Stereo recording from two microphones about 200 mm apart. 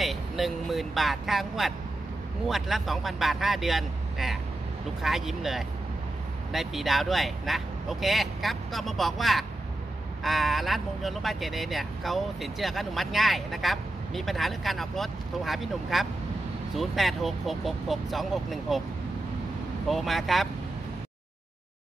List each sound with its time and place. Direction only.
0.0 s speech: centre (ahead or behind)
19.9 s speech: centre (ahead or behind)